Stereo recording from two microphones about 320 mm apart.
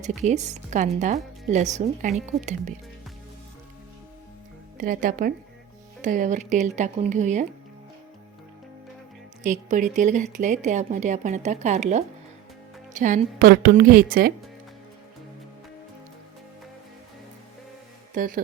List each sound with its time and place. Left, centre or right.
0.0 s speech: right
4.8 s speech: right
9.4 s speech: right
18.1 s speech: right